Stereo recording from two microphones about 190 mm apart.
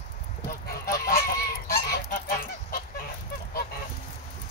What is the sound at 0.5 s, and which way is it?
Goose, 50° left (ahead or behind).